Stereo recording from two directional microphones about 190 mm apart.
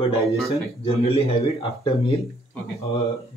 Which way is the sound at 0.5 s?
30° left (ahead or behind).